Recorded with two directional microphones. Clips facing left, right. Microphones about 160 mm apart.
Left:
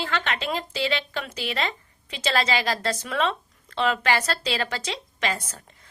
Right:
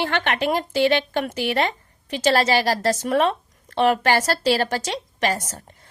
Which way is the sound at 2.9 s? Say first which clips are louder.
Right 8 dB; 45° right (ahead or behind).